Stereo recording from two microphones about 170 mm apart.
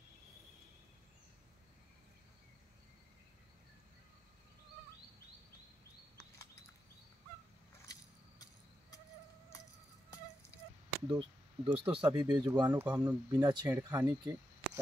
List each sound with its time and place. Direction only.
11.1 s speech: 30° right (ahead or behind)